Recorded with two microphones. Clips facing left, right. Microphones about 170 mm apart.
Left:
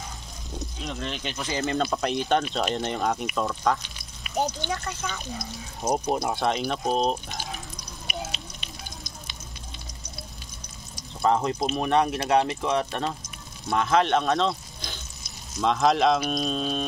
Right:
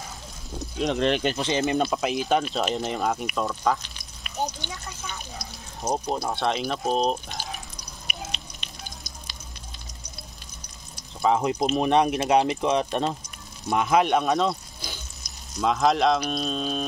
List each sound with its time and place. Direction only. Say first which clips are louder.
0.8 s speech: right 11 dB; 75° right (ahead or behind)
1.4 s speech: right 3 dB; 20° right (ahead or behind)
1.9 s speech: right 1 dB; 5° right (ahead or behind)
3.3 s frying: even; centre (ahead or behind)
4.6 s speech: left 6 dB; 70° left (ahead or behind)
5.9 s speech: left 2 dB; 15° left (ahead or behind)
6.4 s speech: even; centre (ahead or behind)
8.1 s frying: left 3 dB; centre (ahead or behind)
11.2 s speech: right 1 dB; 10° right (ahead or behind)